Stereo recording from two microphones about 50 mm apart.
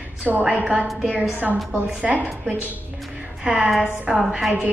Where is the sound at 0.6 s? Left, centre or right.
Right.